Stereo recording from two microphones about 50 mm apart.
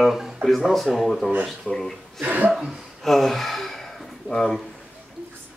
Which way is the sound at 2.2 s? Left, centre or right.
Right.